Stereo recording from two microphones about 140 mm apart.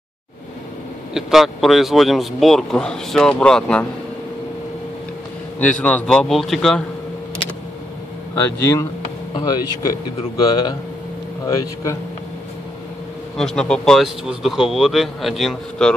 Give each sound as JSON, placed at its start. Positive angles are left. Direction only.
{"t": 1.1, "sound": "a man's voice", "side_deg": 0}
{"t": 5.6, "sound": "a man's voice", "side_deg": 10}
{"t": 9.3, "sound": "speech", "side_deg": 30}
{"t": 13.4, "sound": "a man's voice", "side_deg": 5}